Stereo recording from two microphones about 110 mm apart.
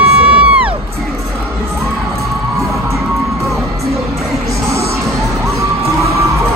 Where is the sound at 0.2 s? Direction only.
10° right (ahead or behind).